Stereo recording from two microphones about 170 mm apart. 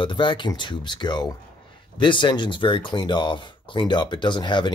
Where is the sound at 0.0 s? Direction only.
30° left (ahead or behind).